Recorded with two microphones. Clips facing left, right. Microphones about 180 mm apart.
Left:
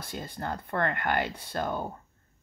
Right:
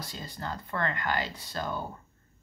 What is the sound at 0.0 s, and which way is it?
Speech, 55° left (ahead or behind).